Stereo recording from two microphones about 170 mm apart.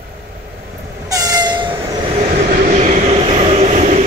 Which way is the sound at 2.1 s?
40° right (ahead or behind).